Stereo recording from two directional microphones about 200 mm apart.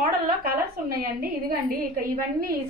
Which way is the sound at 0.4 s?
45° right (ahead or behind).